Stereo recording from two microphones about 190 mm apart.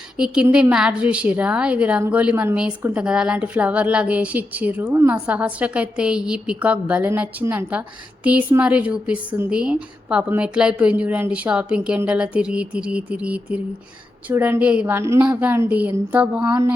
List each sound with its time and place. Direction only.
0.2 s a woman's voice: 5° right (ahead or behind)
16.4 s speech: 25° right (ahead or behind)